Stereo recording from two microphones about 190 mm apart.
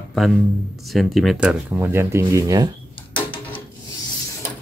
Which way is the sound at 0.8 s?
Centre (ahead or behind).